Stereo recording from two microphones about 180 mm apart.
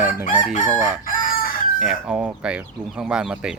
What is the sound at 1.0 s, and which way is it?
Chicken, 50° left (ahead or behind).